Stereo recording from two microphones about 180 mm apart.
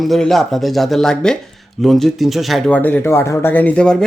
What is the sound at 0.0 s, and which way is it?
Speech, centre (ahead or behind).